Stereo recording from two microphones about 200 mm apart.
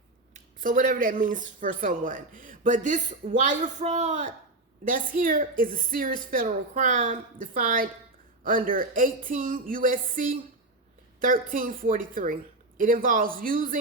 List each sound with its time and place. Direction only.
0.3 s a woman's voice: 40° right (ahead or behind)
11.5 s a woman's voice: 45° right (ahead or behind)